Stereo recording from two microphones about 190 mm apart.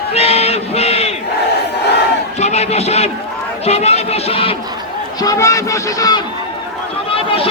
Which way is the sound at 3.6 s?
35° left (ahead or behind).